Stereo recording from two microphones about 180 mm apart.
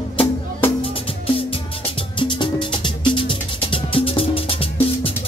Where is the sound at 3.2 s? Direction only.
30° left (ahead or behind).